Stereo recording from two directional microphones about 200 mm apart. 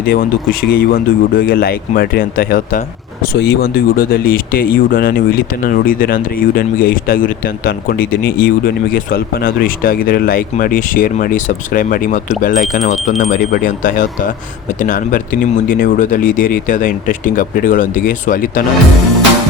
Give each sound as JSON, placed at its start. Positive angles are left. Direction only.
{"t": 0.0, "sound": "speech", "side_deg": 50}